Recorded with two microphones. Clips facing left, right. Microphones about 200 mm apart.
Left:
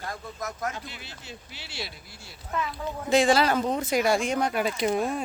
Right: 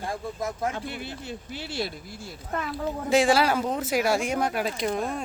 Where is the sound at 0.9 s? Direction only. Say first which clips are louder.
Right 8 dB; 55° right (ahead or behind).